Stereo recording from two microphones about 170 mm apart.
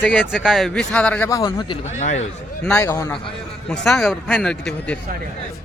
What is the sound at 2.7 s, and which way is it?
Speech, 15° left (ahead or behind).